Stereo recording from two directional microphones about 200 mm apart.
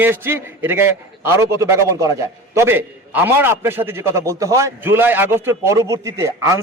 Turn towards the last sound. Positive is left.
turn(degrees=-15)  # may be behind; listen again after turning